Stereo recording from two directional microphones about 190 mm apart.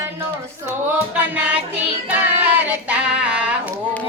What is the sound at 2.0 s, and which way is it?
Music, 10° right (ahead or behind).